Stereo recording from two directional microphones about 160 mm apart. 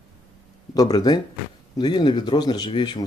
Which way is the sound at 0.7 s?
25° left (ahead or behind).